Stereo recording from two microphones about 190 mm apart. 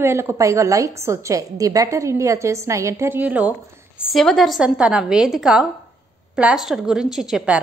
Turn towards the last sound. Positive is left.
turn(degrees=-5)  # may be behind; listen again after turning